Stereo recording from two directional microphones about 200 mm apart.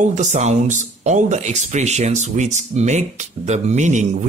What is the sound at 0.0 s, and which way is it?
Speech, 35° right (ahead or behind).